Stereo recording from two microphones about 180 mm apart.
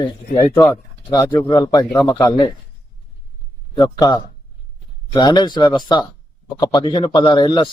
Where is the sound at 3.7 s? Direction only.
20° left (ahead or behind).